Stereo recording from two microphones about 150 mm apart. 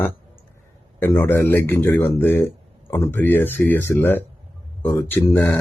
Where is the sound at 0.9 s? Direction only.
15° left (ahead or behind).